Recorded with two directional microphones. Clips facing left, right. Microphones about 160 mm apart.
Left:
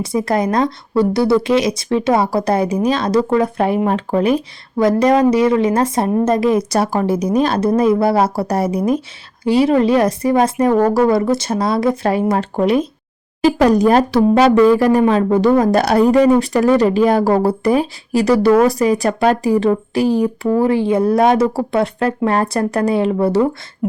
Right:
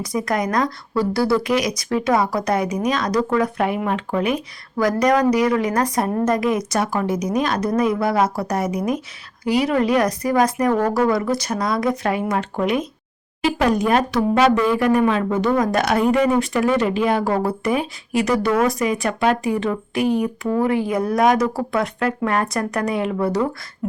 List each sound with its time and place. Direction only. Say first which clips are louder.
0.0 s a woman's voice: left 5 dB; 30° left (ahead or behind)